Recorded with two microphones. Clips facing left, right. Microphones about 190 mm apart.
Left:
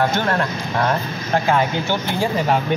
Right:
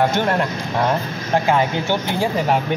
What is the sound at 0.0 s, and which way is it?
Speech, 15° right (ahead or behind).